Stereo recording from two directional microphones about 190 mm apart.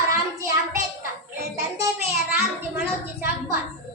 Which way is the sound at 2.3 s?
10° right (ahead or behind).